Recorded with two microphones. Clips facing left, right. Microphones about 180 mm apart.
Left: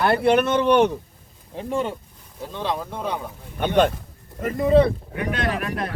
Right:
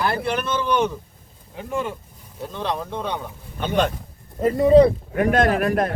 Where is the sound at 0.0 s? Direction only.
60° left (ahead or behind).